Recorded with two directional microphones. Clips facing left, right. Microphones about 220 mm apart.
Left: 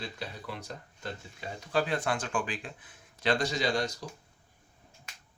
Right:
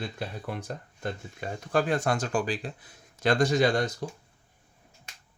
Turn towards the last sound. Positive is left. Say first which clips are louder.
# right 6 dB
turn(degrees=-55)  # may be behind; listen again after turning